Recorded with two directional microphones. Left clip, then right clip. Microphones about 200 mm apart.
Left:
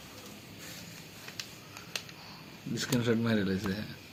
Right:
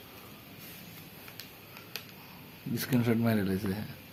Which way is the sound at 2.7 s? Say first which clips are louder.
Even; 45° right (ahead or behind).